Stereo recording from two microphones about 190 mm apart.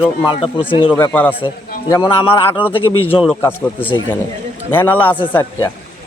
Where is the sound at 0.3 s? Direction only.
30° left (ahead or behind).